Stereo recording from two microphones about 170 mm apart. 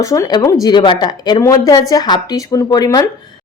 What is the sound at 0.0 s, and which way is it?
Speech, 20° left (ahead or behind).